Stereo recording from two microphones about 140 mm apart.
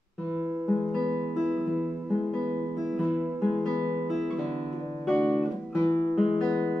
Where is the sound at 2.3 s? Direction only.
5° left (ahead or behind).